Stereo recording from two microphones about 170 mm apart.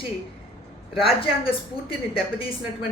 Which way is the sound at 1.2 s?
30° left (ahead or behind).